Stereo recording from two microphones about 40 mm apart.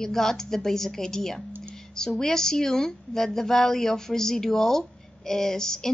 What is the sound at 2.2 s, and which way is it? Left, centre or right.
Speech, centre.